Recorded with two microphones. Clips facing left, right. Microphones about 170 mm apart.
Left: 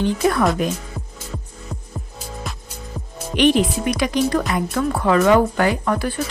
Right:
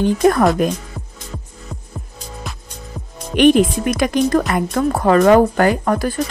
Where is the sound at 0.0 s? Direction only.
45° right (ahead or behind).